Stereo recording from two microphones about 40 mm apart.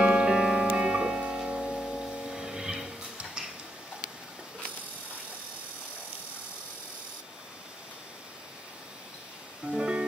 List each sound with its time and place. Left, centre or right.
0.0 s music: right
1.6 s music: centre
9.7 s music: right